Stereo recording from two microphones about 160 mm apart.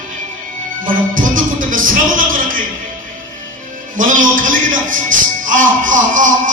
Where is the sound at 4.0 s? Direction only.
55° right (ahead or behind).